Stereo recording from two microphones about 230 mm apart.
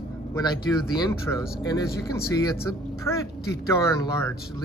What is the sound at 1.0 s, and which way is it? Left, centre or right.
Speech, centre.